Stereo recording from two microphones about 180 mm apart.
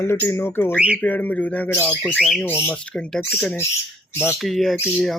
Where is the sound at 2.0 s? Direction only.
Centre (ahead or behind).